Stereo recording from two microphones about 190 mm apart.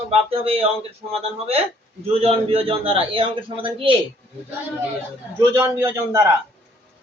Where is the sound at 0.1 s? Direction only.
30° right (ahead or behind).